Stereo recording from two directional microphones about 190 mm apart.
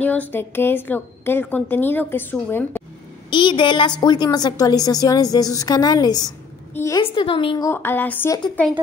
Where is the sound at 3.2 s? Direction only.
25° left (ahead or behind).